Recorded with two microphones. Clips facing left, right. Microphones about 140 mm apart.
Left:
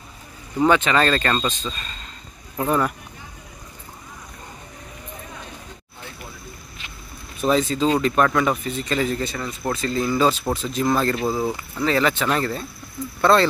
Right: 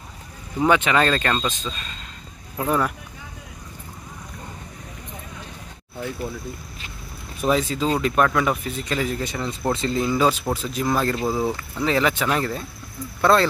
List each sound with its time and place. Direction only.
0.6 s speech: 10° right (ahead or behind)
7.4 s speech: 10° right (ahead or behind)